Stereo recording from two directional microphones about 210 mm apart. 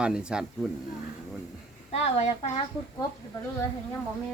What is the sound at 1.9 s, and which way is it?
Speech, 30° left (ahead or behind).